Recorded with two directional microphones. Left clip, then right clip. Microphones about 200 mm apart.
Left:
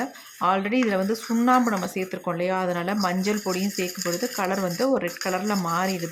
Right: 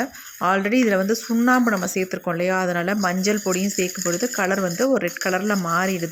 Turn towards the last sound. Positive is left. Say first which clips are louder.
# right 3 dB
turn(degrees=-10)  # may be behind; listen again after turning